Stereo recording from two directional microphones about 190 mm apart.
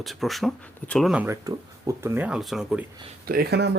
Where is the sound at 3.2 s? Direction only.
50° right (ahead or behind).